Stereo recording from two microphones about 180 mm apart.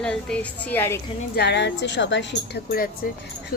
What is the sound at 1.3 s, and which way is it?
Speech, 70° left (ahead or behind).